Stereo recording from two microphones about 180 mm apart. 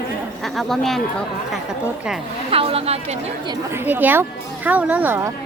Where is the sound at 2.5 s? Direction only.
35° right (ahead or behind).